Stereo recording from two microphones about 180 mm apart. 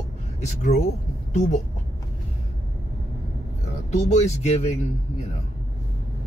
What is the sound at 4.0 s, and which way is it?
Speech, 40° left (ahead or behind).